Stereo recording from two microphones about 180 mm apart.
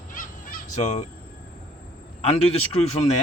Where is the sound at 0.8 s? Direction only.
40° left (ahead or behind).